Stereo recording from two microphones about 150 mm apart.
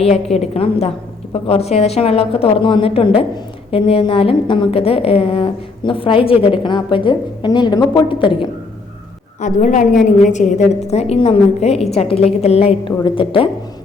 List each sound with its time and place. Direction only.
0.0 s a woman's voice: 45° left (ahead or behind)
9.4 s a woman's voice: 55° left (ahead or behind)
13.0 s a woman's voice: 30° left (ahead or behind)